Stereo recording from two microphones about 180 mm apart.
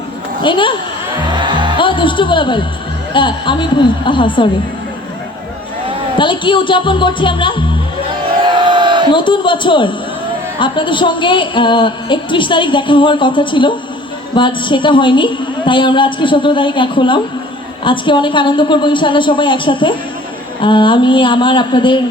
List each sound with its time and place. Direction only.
0.4 s a woman's voice: 25° left (ahead or behind)
1.3 s music: 25° right (ahead or behind)
1.8 s a woman's voice: 25° left (ahead or behind)
6.1 s a woman's voice: 25° left (ahead or behind)
8.4 s crowd: 25° right (ahead or behind)
9.0 s a woman's voice: 25° left (ahead or behind)